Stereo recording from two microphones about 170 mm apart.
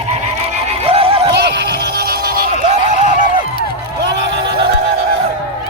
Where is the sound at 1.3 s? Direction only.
80° right.